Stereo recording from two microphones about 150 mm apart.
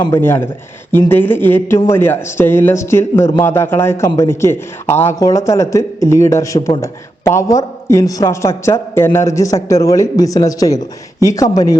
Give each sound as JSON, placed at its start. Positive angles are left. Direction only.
{"t": 0.1, "sound": "a man's voice", "side_deg": 15}